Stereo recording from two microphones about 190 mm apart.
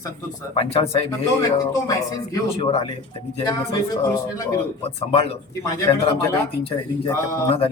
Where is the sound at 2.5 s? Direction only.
30° left (ahead or behind).